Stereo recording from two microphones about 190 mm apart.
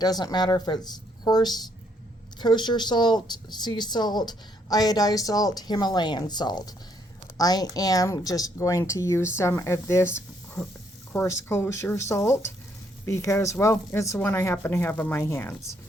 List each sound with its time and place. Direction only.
0.0 s speech: 20° left (ahead or behind)